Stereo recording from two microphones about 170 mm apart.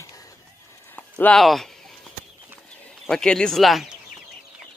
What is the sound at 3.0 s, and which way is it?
Speech, 5° left (ahead or behind).